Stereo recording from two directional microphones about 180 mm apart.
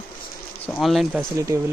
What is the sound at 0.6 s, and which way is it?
Speech, centre (ahead or behind).